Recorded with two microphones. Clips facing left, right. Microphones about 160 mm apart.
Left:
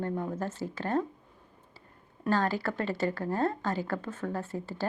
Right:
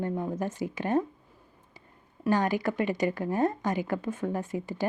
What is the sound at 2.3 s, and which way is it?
A woman's voice, 15° right (ahead or behind).